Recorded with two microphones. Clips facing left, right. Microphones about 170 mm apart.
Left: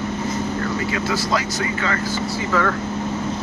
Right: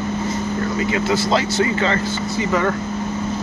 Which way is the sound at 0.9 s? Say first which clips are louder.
Right 6 dB; 25° right (ahead or behind).